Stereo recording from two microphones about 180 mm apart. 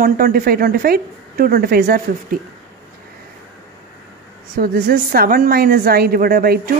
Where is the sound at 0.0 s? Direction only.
55° right (ahead or behind).